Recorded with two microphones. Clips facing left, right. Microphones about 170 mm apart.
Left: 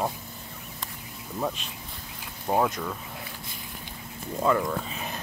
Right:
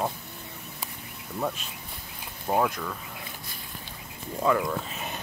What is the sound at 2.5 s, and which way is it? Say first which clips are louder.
Speech: left 1 dB; 10° left (ahead or behind).